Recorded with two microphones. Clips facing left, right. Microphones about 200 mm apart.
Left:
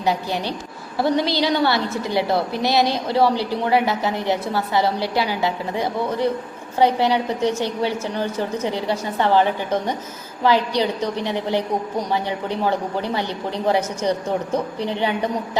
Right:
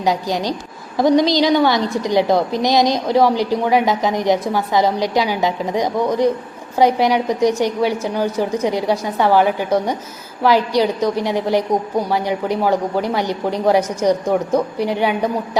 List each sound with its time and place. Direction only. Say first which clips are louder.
0.0 s a woman's voice: right 3 dB; 15° right (ahead or behind)